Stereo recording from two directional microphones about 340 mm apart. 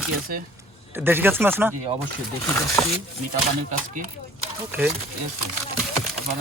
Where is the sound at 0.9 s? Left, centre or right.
Centre.